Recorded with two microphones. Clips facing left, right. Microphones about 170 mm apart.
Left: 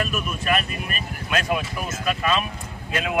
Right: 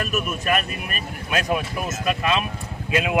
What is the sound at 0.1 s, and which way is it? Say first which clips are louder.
Speech: right 2 dB; 45° right (ahead or behind).